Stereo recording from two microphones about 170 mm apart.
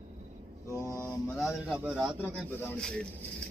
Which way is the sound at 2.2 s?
10° left (ahead or behind).